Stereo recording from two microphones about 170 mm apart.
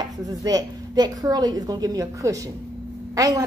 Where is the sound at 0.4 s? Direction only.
20° right (ahead or behind).